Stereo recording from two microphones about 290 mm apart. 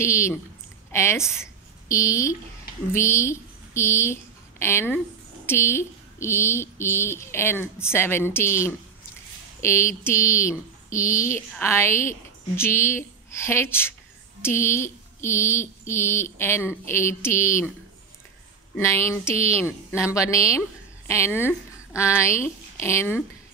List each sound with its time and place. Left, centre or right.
0.0 s a woman's voice: centre
1.4 s a sound: centre
2.9 s a woman's voice: centre
18.8 s a woman's voice: centre
19.3 s a woman's voice: right
20.0 s a woman's voice: centre